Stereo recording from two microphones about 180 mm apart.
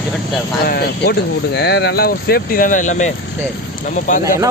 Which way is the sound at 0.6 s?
60° left (ahead or behind).